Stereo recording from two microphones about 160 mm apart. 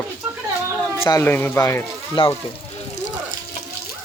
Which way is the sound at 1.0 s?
15° left (ahead or behind).